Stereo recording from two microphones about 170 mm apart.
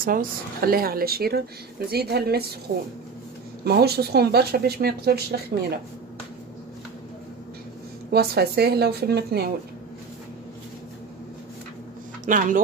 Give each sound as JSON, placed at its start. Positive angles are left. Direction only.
{"t": 0.0, "sound": "speech", "side_deg": -55}
{"t": 3.6, "sound": "speech", "side_deg": -70}
{"t": 8.1, "sound": "speech", "side_deg": -70}
{"t": 12.3, "sound": "speech", "side_deg": -50}